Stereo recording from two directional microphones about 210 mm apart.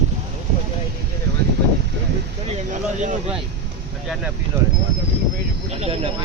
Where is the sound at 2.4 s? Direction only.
35° right (ahead or behind).